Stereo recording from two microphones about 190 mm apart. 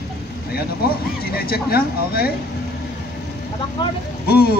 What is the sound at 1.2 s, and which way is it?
Speech, 55° left (ahead or behind).